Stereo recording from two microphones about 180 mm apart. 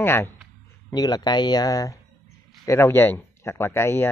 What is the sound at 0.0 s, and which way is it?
Speech, 10° left (ahead or behind).